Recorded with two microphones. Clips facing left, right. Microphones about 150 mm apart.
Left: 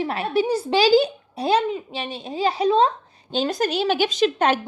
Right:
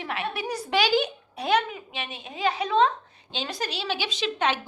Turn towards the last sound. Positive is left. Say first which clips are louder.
# left 7 dB
turn(degrees=45)  # may be behind; listen again after turning